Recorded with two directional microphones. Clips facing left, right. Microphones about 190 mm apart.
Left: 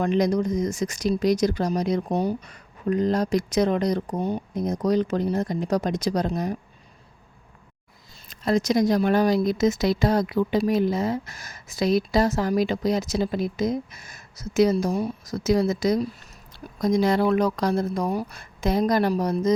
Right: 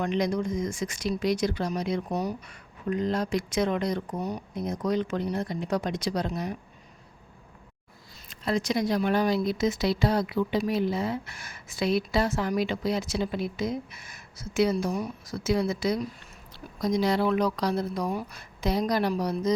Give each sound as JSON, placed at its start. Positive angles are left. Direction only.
{"t": 0.0, "sound": "speech", "side_deg": 40}
{"t": 4.5, "sound": "speech", "side_deg": 40}
{"t": 8.3, "sound": "speech", "side_deg": 40}